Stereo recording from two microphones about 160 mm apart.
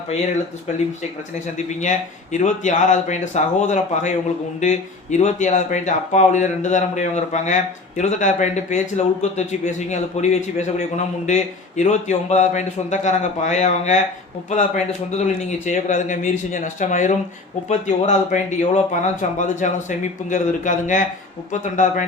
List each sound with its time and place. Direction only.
1.5 s speech: 50° left (ahead or behind)
15.2 s speech: 45° left (ahead or behind)